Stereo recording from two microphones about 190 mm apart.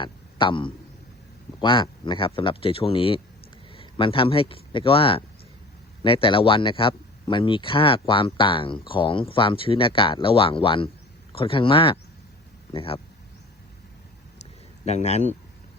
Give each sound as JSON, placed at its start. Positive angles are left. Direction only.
{"t": 0.0, "sound": "a man's voice", "side_deg": 25}
{"t": 14.8, "sound": "speech", "side_deg": 35}